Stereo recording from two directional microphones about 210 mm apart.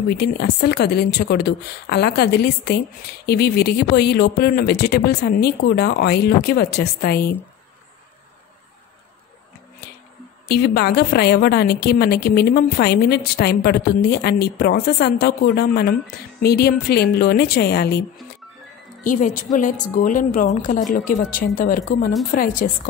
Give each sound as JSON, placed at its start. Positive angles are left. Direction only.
{"t": 0.1, "sound": "a woman's voice", "side_deg": 50}
{"t": 10.5, "sound": "a woman's voice", "side_deg": 50}
{"t": 19.0, "sound": "a woman's voice", "side_deg": 40}